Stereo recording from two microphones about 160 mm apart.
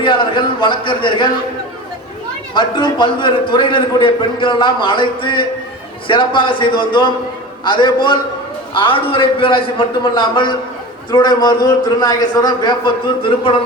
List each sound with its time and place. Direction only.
0.0 s a man's voice: 30° left (ahead or behind)
2.6 s a man's voice: 30° left (ahead or behind)